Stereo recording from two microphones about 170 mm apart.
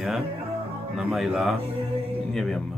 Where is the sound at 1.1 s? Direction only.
Centre (ahead or behind).